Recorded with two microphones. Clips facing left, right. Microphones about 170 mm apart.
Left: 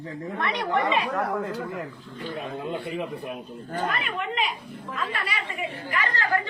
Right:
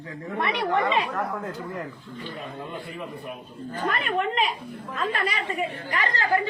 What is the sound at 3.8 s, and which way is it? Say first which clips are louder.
Speech: right 7 dB; 35° right (ahead or behind).